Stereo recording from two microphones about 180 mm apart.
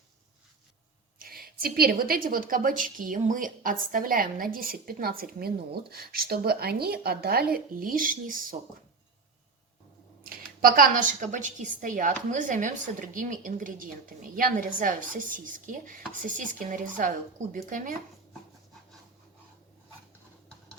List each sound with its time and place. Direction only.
1.2 s a woman's voice: 55° right (ahead or behind)
10.2 s a woman's voice: 55° right (ahead or behind)